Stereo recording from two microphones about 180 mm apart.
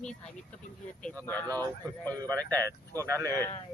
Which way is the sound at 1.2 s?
10° left (ahead or behind).